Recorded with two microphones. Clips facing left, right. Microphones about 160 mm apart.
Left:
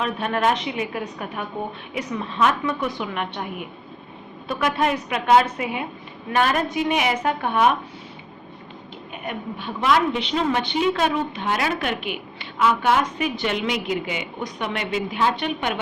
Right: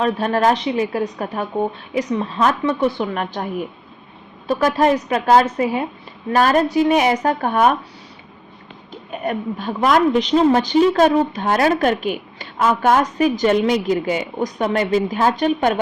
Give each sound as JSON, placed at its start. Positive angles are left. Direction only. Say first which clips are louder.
{"t": 0.0, "sound": "a woman's voice", "louder": "right 5 dB", "side_deg": -35}
{"t": 4.4, "sound": "a woman's voice", "louder": "right 6 dB", "side_deg": -35}
{"t": 9.2, "sound": "a woman's voice", "louder": "right 8 dB", "side_deg": -40}